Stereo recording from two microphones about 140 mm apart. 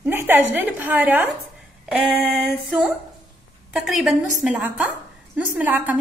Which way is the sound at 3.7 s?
5° right (ahead or behind).